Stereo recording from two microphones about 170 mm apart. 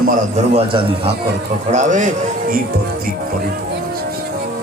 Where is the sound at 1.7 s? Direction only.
45° right (ahead or behind).